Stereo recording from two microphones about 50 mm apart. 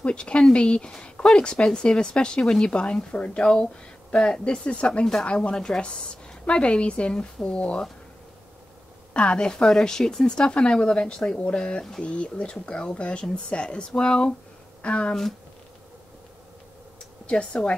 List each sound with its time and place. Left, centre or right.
0.0 s a sound: left
0.4 s speech: centre
4.6 s speech: left
9.1 s speech: centre
17.3 s speech: left